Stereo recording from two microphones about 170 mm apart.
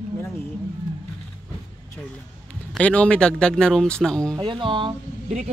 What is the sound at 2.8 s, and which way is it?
Speech, 5° left (ahead or behind).